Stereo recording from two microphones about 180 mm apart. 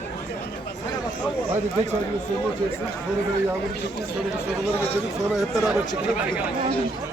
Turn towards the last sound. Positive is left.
turn(degrees=-5)  # may be behind; listen again after turning